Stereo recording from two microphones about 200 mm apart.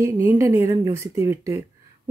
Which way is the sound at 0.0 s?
15° right (ahead or behind).